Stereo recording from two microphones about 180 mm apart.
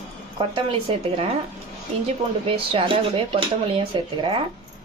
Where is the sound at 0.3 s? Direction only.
30° right (ahead or behind).